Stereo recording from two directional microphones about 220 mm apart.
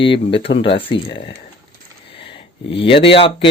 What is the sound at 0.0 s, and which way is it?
Speech, 25° left (ahead or behind).